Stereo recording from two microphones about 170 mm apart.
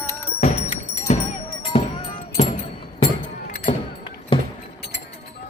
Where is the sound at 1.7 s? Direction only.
35° left (ahead or behind).